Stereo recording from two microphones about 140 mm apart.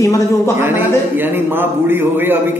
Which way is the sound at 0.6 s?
15° right (ahead or behind).